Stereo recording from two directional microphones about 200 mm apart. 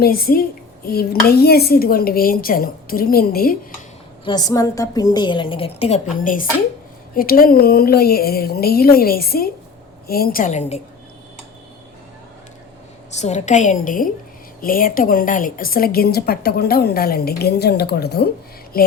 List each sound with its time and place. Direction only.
0.0 s a woman's voice: 50° left (ahead or behind)
4.3 s a woman's voice: 20° left (ahead or behind)
6.1 s a woman's voice: 45° left (ahead or behind)
13.1 s a woman's voice: 35° left (ahead or behind)